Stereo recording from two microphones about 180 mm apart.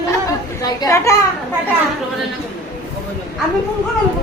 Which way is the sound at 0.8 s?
15° left (ahead or behind).